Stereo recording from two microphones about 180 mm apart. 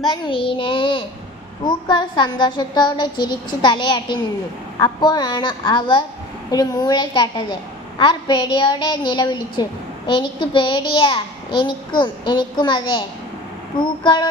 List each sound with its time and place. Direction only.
0.1 s a child's voice: 25° left (ahead or behind)